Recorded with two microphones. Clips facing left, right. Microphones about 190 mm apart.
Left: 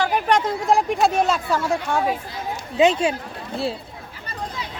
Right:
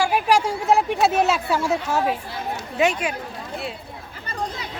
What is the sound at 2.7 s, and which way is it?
Speech, 20° left (ahead or behind).